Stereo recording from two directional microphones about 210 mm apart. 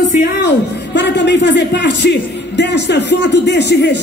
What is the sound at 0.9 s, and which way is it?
A man's voice, 55° left (ahead or behind).